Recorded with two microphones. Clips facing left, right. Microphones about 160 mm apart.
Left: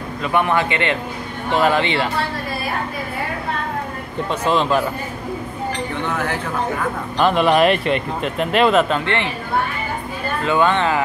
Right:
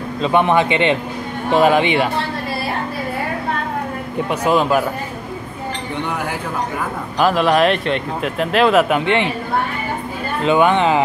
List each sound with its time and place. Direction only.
0.2 s a man's voice: 20° right (ahead or behind)
4.3 s speech: 10° right (ahead or behind)
6.0 s speech: 10° right (ahead or behind)
8.8 s speech: 15° right (ahead or behind)
10.4 s speech: 15° right (ahead or behind)